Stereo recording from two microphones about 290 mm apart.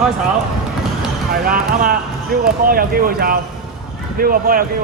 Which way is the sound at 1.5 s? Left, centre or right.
Right.